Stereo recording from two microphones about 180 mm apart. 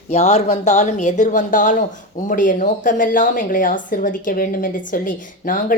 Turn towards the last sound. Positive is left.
turn(degrees=50)  # may be behind; listen again after turning